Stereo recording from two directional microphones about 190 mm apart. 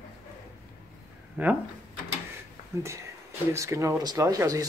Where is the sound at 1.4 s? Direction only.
10° right (ahead or behind).